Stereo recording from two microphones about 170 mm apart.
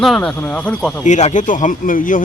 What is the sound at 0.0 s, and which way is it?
Speech, centre (ahead or behind).